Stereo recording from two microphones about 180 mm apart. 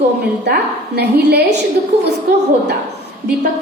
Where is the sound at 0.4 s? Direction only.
65° right (ahead or behind).